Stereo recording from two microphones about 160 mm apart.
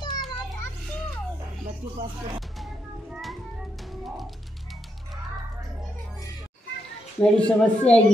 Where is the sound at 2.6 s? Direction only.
Centre (ahead or behind).